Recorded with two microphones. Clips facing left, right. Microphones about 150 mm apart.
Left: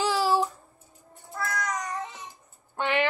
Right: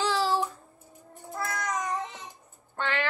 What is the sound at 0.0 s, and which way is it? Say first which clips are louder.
Child singing: left 2 dB; 10° left (ahead or behind).